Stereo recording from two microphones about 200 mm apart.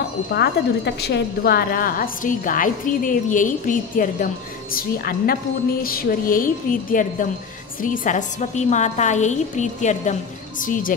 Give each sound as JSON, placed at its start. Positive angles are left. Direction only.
{"t": 0.3, "sound": "a woman's voice", "side_deg": 55}